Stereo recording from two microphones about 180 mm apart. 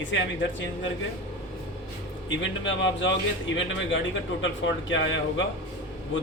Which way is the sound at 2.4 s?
90° left.